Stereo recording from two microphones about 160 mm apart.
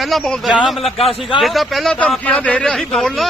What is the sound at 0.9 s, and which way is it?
Speech, 40° left (ahead or behind).